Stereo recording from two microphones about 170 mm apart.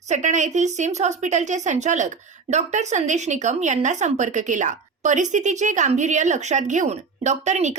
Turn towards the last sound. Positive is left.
turn(degrees=-45)  # may be behind; listen again after turning